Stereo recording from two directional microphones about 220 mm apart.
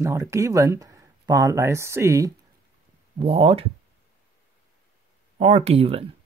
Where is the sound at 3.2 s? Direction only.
25° right (ahead or behind).